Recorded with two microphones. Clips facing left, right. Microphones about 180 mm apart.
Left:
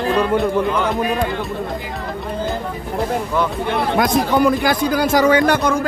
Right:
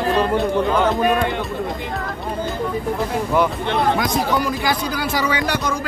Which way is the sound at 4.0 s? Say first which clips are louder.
Left 5 dB; 55° left (ahead or behind).